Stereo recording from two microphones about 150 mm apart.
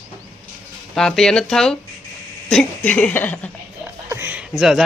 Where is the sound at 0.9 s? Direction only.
5° left (ahead or behind).